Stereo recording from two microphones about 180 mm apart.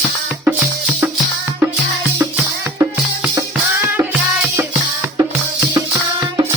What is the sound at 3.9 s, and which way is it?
Music, 10° right (ahead or behind).